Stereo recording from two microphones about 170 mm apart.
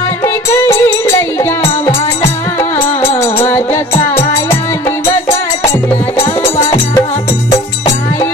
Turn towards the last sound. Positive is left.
turn(degrees=20)  # may be behind; listen again after turning